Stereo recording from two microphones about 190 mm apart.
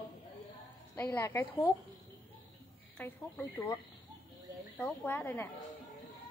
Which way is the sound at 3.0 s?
10° left (ahead or behind).